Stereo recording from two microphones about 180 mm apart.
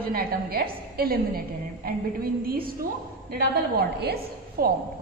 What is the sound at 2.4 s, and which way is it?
A woman's voice, 55° right (ahead or behind).